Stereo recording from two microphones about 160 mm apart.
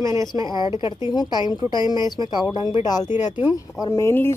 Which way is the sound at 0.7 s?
30° left (ahead or behind).